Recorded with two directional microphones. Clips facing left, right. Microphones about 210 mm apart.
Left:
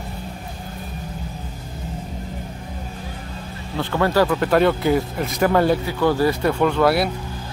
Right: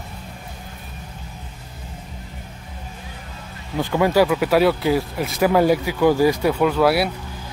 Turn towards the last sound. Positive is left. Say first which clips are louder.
# even
turn(degrees=-5)  # may be behind; listen again after turning